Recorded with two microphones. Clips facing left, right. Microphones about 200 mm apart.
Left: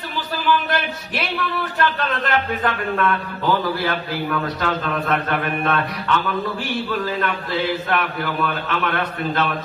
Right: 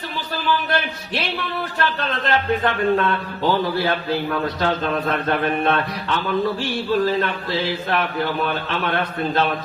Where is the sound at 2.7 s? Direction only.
30° right (ahead or behind).